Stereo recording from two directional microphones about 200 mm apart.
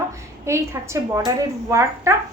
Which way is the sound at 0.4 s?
15° right (ahead or behind).